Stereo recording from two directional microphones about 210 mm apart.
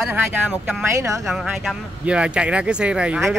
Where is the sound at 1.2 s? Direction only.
Centre (ahead or behind).